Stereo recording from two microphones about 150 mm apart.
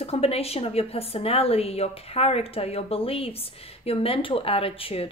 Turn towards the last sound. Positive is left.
turn(degrees=40)  # may be behind; listen again after turning